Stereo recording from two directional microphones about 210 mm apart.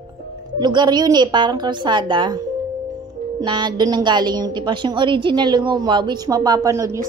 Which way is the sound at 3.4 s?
20° right (ahead or behind).